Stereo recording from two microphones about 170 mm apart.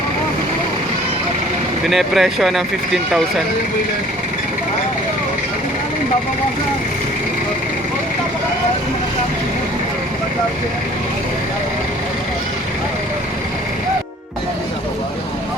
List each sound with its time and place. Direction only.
1.9 s speech: centre (ahead or behind)